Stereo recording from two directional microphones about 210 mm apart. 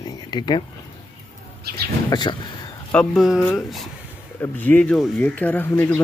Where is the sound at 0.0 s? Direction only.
20° left (ahead or behind).